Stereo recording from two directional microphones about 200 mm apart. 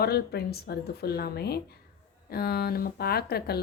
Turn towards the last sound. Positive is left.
turn(degrees=50)  # may be behind; listen again after turning